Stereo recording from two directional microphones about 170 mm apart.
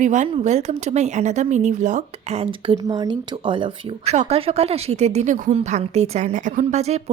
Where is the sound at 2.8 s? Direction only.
25° right (ahead or behind).